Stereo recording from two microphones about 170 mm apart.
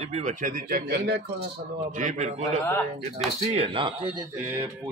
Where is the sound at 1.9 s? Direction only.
50° right (ahead or behind); by 4.2 s 30° right (ahead or behind).